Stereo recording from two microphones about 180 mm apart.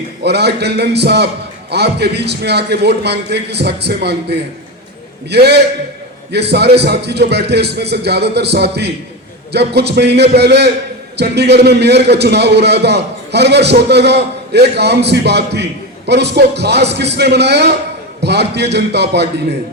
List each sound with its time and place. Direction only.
0.2 s a man's voice: 65° right (ahead or behind)